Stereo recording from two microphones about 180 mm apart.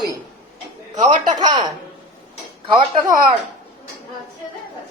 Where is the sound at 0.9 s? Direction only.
25° right (ahead or behind).